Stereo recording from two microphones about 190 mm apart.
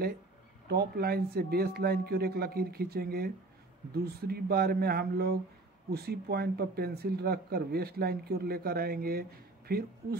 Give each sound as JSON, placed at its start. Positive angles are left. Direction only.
{"t": 0.7, "sound": "speech", "side_deg": -55}